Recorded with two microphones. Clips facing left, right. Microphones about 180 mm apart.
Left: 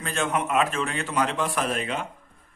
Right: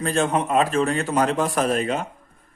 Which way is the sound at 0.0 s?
35° right (ahead or behind).